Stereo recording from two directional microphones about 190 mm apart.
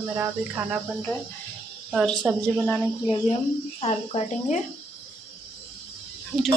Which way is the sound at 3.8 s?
35° left (ahead or behind).